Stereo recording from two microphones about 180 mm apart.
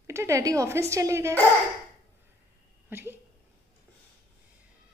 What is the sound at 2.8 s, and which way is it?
Speech, 10° right (ahead or behind).